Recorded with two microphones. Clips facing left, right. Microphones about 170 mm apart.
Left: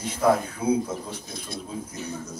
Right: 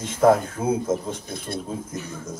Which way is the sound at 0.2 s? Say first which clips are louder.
Right 4 dB; 45° right (ahead or behind).